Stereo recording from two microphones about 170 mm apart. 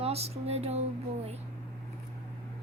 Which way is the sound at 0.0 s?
35° right (ahead or behind).